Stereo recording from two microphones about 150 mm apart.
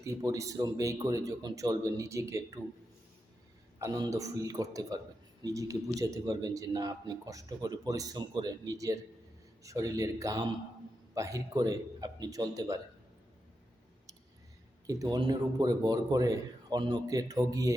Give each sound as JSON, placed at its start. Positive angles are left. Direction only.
{"t": 0.0, "sound": "speech", "side_deg": -20}
{"t": 3.8, "sound": "speech", "side_deg": -25}
{"t": 14.8, "sound": "speech", "side_deg": -25}